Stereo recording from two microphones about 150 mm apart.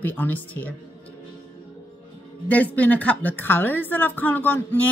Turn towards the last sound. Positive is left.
turn(degrees=10)  # may be behind; listen again after turning